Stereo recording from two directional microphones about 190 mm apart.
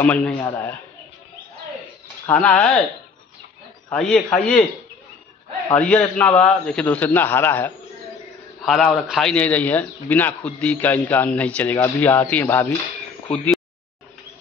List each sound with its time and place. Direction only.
0.0 s a man's voice: 10° left (ahead or behind)
2.2 s a man's voice: 10° left (ahead or behind)
3.9 s a man's voice: 5° left (ahead or behind)
5.7 s a man's voice: 5° left (ahead or behind)